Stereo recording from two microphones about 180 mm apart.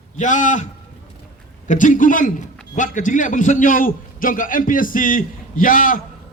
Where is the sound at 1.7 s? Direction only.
45° left (ahead or behind).